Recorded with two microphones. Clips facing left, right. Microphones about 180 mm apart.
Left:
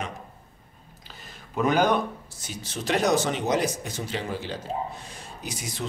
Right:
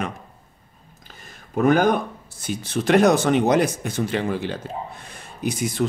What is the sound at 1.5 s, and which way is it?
Speech, 50° right (ahead or behind).